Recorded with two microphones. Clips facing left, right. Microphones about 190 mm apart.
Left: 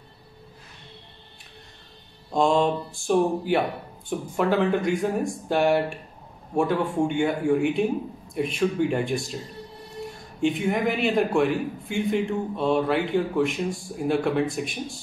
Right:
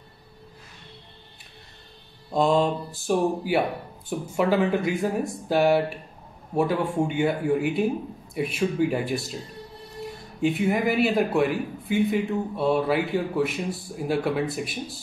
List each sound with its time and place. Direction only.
2.3 s a man's voice: centre (ahead or behind)
10.4 s a man's voice: 5° right (ahead or behind)